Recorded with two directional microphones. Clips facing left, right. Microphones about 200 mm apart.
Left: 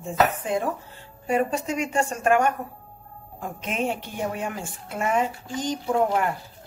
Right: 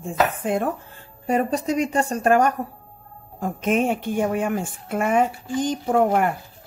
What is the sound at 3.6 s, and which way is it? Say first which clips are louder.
Speech: right 7 dB; 50° right (ahead or behind).